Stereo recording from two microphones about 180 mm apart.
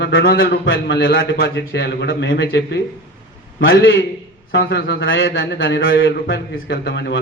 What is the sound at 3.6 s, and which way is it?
Speech, 90° left.